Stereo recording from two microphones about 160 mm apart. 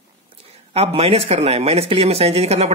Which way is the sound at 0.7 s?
40° right (ahead or behind).